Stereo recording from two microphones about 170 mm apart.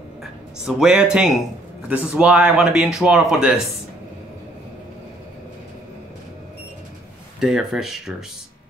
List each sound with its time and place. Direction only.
0.2 s speech: centre (ahead or behind)
7.3 s speech: centre (ahead or behind)